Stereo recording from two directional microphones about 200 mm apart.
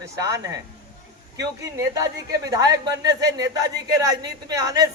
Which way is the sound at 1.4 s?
15° right (ahead or behind).